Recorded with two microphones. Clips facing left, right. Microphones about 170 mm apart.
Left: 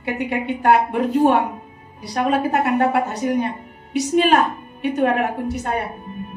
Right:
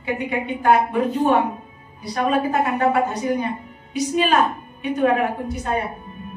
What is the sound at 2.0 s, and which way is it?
A woman's voice, 70° left (ahead or behind).